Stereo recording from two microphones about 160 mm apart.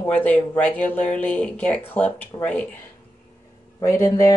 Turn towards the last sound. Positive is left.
turn(degrees=15)  # may be behind; listen again after turning